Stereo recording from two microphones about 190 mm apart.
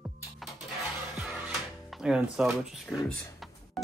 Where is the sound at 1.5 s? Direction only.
Centre (ahead or behind).